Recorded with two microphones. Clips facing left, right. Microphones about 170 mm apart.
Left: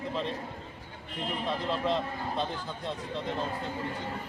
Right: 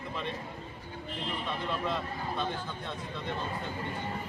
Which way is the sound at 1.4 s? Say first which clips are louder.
Left 5 dB; 30° left (ahead or behind).